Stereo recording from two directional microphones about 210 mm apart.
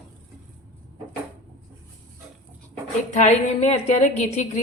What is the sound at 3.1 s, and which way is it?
A woman's voice, 35° left (ahead or behind).